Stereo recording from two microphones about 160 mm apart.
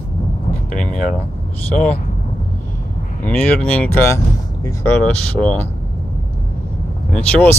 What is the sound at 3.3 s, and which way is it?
Speech, 10° left (ahead or behind).